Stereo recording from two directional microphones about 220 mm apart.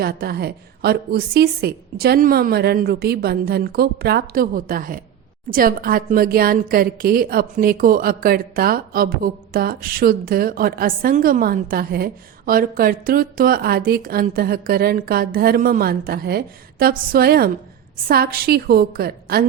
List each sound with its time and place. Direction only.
0.0 s a woman's voice: 45° right (ahead or behind)